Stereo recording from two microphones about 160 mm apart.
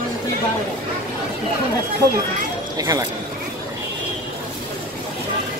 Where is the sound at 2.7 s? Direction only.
20° right (ahead or behind).